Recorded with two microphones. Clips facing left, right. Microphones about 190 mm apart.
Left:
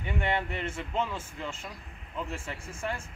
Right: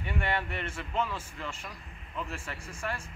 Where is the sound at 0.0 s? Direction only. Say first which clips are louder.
Left 2 dB; 20° left (ahead or behind).